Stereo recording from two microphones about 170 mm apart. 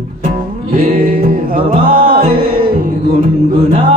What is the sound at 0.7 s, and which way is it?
Music, 55° right (ahead or behind).